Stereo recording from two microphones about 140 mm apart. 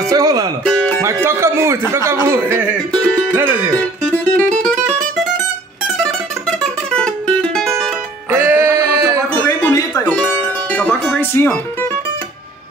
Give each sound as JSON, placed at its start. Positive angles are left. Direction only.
{"t": 0.1, "sound": "speech", "side_deg": -25}
{"t": 0.7, "sound": "music", "side_deg": 10}
{"t": 1.0, "sound": "a man's voice", "side_deg": -20}
{"t": 2.9, "sound": "music", "side_deg": 10}
{"t": 3.3, "sound": "a man's voice", "side_deg": -15}
{"t": 3.7, "sound": "music", "side_deg": 10}
{"t": 6.4, "sound": "music", "side_deg": 5}
{"t": 8.3, "sound": "music", "side_deg": -15}
{"t": 9.7, "sound": "music", "side_deg": 25}
{"t": 10.2, "sound": "music", "side_deg": 10}